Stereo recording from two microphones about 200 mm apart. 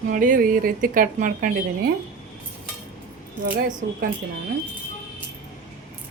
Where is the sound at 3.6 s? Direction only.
45° right (ahead or behind).